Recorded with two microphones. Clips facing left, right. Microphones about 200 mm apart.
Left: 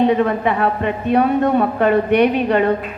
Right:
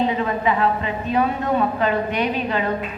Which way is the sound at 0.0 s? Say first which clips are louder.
Left 6 dB; 60° left (ahead or behind).